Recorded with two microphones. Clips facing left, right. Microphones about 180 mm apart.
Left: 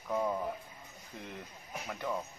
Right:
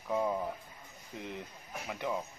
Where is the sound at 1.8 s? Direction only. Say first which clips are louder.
Right 1 dB; 10° right (ahead or behind).